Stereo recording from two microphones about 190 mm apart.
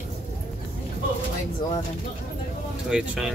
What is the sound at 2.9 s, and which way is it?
Speech, 5° right (ahead or behind).